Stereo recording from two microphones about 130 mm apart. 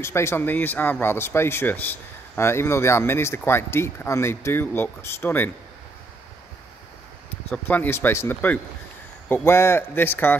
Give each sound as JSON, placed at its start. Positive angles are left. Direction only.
{"t": 0.0, "sound": "speech", "side_deg": 20}
{"t": 7.5, "sound": "speech", "side_deg": 15}